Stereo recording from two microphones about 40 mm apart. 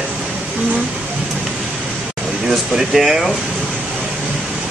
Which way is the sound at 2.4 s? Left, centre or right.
Centre.